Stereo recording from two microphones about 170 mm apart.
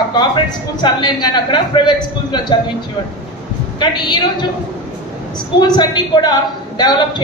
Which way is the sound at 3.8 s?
25° left (ahead or behind).